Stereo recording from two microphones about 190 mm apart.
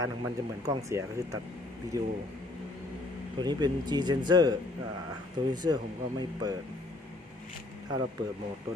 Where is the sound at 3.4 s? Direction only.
20° right (ahead or behind).